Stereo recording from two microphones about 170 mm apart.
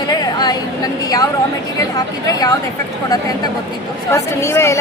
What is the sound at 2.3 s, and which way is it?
Speech, 20° left (ahead or behind).